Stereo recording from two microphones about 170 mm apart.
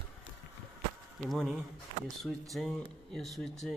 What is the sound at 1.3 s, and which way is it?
Speech, centre (ahead or behind).